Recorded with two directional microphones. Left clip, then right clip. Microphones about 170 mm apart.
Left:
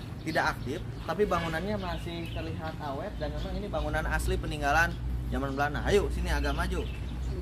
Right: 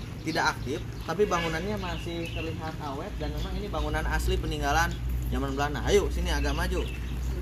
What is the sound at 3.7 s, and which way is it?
Speech, 20° left (ahead or behind).